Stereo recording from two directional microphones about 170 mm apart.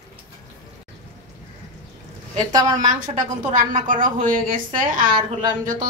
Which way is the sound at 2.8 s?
45° right (ahead or behind).